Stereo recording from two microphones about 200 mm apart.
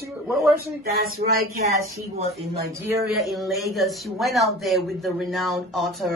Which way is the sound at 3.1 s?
Centre (ahead or behind).